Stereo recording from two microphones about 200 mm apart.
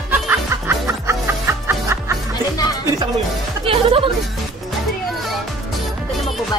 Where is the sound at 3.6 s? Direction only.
25° right (ahead or behind).